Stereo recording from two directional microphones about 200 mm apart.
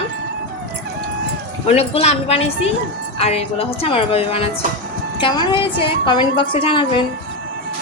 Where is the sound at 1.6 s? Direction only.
30° left (ahead or behind).